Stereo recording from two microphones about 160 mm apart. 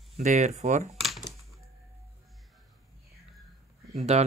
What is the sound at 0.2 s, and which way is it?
Speech, 45° right (ahead or behind).